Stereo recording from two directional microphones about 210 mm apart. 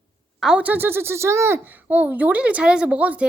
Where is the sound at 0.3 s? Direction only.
5° right (ahead or behind).